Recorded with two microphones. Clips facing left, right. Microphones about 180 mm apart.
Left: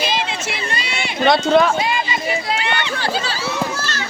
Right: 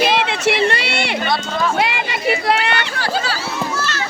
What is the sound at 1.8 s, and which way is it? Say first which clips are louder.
Speech: right 2 dB; 70° right (ahead or behind).